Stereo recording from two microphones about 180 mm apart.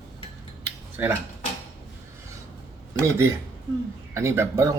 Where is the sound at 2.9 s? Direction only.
15° right (ahead or behind).